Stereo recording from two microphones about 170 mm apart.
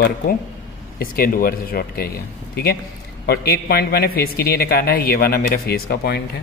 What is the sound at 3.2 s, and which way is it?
A man's voice, 65° left (ahead or behind).